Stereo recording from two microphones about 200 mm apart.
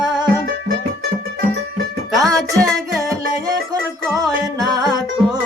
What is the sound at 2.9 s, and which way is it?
Music, 15° right (ahead or behind).